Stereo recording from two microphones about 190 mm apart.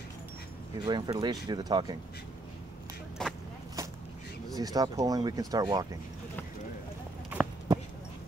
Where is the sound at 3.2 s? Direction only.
5° left (ahead or behind).